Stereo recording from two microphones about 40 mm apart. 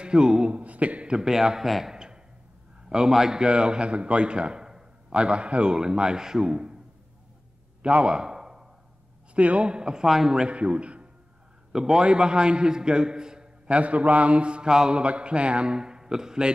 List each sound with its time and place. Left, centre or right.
0.0 s a man's voice: right
0.5 s a man's voice: right
1.0 s a man's voice: centre
3.1 s a man's voice: centre
3.4 s a man's voice: right
5.1 s a man's voice: right
7.8 s a sound: right
9.3 s a man's voice: right; by 10.4 s centre
10.4 s a man's voice: right
11.7 s a man's voice: centre
13.7 s a man's voice: right; by 16.5 s centre